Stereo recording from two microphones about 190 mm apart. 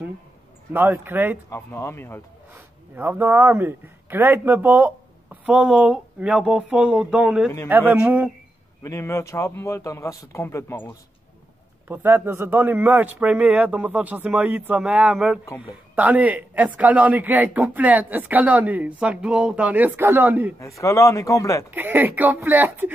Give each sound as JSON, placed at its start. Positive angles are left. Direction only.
{"t": 0.7, "sound": "speech", "side_deg": -10}
{"t": 1.5, "sound": "a man's voice", "side_deg": 15}
{"t": 2.5, "sound": "speech", "side_deg": -10}
{"t": 8.8, "sound": "a man's voice", "side_deg": 15}
{"t": 11.9, "sound": "speech", "side_deg": -10}
{"t": 20.5, "sound": "a man's voice", "side_deg": 15}
{"t": 21.6, "sound": "speech", "side_deg": -10}